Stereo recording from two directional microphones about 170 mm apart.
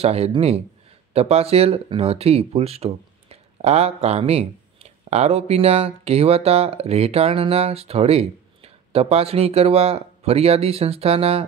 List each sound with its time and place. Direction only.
0.0 s speech: 35° right (ahead or behind)